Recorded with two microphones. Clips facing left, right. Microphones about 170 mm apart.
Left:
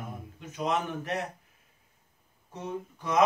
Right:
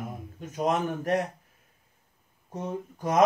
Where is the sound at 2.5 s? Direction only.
45° right (ahead or behind).